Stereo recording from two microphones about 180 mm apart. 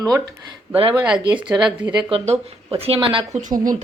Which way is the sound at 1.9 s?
30° right (ahead or behind).